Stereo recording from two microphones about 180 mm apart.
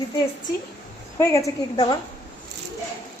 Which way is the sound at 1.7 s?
25° left (ahead or behind).